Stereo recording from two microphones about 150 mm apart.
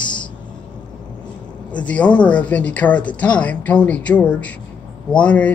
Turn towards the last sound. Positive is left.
turn(degrees=10)  # may be behind; listen again after turning